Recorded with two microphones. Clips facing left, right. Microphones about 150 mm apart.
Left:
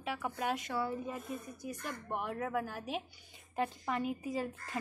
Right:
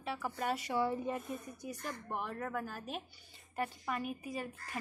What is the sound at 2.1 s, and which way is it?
A woman's voice, 5° left (ahead or behind).